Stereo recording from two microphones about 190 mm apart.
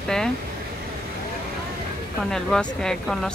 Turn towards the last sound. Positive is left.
turn(degrees=5)  # may be behind; listen again after turning